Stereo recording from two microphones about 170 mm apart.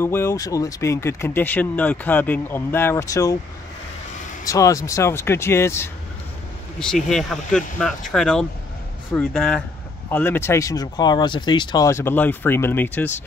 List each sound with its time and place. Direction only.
0.0 s speech: 15° left (ahead or behind)
4.5 s speech: 20° left (ahead or behind)
6.8 s speech: 5° left (ahead or behind)